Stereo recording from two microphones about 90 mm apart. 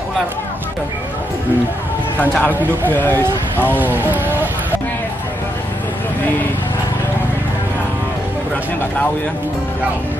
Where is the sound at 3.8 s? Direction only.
20° right (ahead or behind).